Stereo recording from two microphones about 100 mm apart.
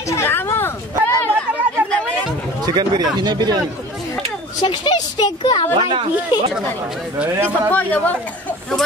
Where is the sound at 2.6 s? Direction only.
45° right (ahead or behind).